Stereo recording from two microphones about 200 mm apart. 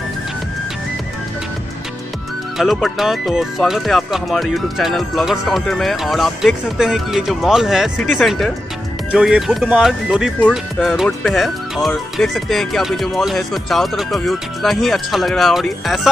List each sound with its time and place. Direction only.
2.5 s speech: centre (ahead or behind)